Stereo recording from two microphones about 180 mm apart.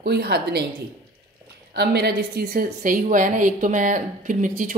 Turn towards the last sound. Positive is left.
turn(degrees=-45)  # may be behind; listen again after turning